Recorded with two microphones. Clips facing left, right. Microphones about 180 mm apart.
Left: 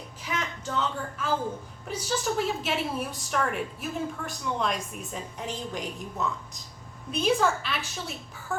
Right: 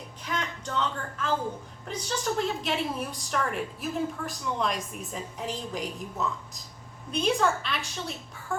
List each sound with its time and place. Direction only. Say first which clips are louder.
0.3 s a woman's voice: even; 5° left (ahead or behind)